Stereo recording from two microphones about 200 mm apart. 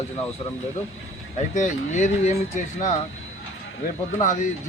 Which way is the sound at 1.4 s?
35° left (ahead or behind).